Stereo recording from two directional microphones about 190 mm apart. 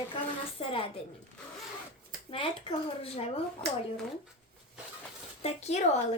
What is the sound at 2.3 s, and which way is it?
Speech, 30° left (ahead or behind).